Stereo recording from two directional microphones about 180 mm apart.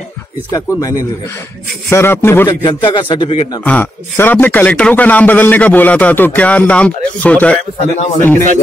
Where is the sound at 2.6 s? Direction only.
25° left (ahead or behind).